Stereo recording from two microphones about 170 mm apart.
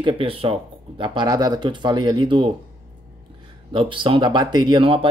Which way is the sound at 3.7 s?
30° right (ahead or behind).